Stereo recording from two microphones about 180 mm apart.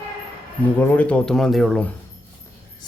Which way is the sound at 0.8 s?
10° left (ahead or behind).